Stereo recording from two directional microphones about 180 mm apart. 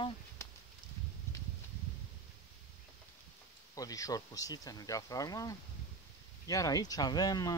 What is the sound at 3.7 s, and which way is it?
Speech, 20° left (ahead or behind).